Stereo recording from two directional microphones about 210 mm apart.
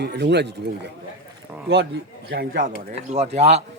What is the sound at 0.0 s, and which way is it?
Speech, 55° right (ahead or behind).